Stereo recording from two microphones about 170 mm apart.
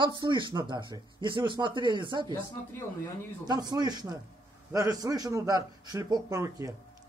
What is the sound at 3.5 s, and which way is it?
A man's voice, 25° right (ahead or behind).